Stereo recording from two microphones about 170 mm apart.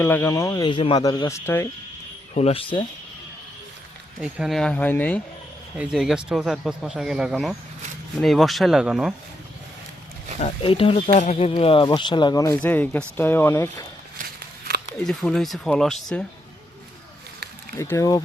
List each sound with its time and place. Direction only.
0.0 s speech: 15° left (ahead or behind)
2.3 s speech: 35° left (ahead or behind)
4.2 s speech: 5° right (ahead or behind)
5.7 s speech: 5° right (ahead or behind)
10.4 s speech: 30° left (ahead or behind)
11.1 s speech: 45° left (ahead or behind); by 12.5 s 20° left (ahead or behind)
12.5 s speech: 10° left (ahead or behind)
14.3 s walk: 75° right (ahead or behind)
14.9 s speech: 5° left (ahead or behind)
17.7 s speech: 15° left (ahead or behind)